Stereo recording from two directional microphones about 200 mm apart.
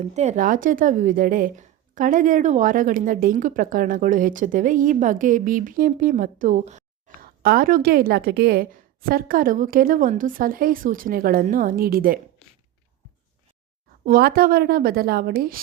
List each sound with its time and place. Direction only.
0.0 s a woman's voice: 35° right (ahead or behind)
14.0 s a woman's voice: 50° right (ahead or behind)